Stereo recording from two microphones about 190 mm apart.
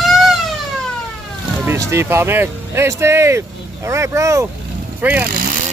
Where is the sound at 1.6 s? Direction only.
15° right (ahead or behind).